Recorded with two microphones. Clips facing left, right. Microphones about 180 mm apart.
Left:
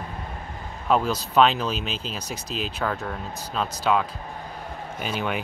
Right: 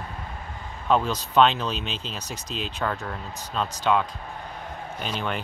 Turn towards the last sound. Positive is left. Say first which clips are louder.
# left 2 dB
turn(degrees=5)  # may be behind; listen again after turning